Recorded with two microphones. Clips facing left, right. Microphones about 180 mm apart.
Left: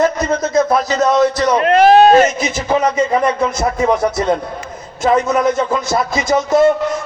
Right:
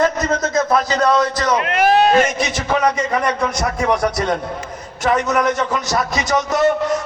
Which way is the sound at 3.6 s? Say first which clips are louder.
Left 5 dB; 25° left (ahead or behind).